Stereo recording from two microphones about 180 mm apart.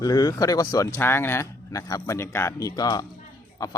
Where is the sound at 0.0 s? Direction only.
20° left (ahead or behind).